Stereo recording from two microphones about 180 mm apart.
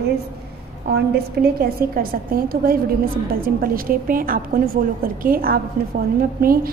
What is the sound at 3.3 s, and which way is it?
A woman's voice, 55° right (ahead or behind).